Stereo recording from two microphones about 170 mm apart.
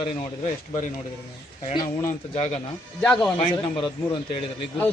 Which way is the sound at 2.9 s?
5° left (ahead or behind).